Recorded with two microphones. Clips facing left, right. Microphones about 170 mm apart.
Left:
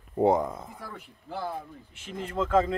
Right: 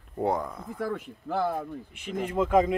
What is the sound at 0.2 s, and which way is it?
Speech, 20° left (ahead or behind).